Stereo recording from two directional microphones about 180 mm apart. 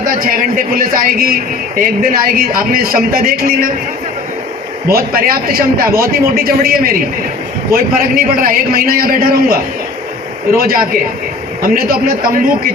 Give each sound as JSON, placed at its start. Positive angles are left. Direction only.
{"t": 0.0, "sound": "a man's voice", "side_deg": -50}
{"t": 4.9, "sound": "a man's voice", "side_deg": -55}
{"t": 10.6, "sound": "a man's voice", "side_deg": -55}